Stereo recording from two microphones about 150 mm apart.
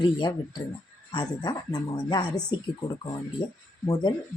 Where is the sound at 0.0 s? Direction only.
30° left (ahead or behind).